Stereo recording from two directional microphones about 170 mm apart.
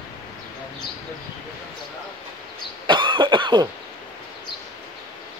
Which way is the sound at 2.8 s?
30° right (ahead or behind).